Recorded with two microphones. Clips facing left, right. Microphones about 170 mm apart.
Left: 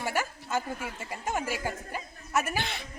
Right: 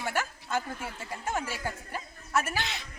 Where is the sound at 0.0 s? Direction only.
10° left (ahead or behind).